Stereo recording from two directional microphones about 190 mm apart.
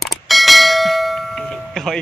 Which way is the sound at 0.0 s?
Centre (ahead or behind).